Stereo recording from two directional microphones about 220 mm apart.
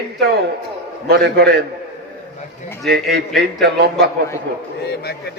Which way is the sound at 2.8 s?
Centre (ahead or behind).